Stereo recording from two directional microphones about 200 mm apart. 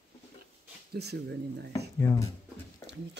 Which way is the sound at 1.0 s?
55° right (ahead or behind).